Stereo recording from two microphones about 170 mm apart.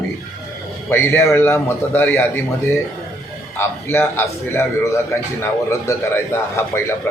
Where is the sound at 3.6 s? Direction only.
15° left (ahead or behind).